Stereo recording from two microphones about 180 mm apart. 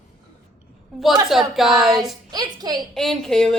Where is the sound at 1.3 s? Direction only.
Centre (ahead or behind).